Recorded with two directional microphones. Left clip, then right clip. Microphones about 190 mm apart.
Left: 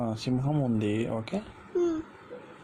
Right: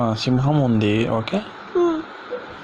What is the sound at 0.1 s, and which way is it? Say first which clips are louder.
Speech: right 10 dB; 5° left (ahead or behind).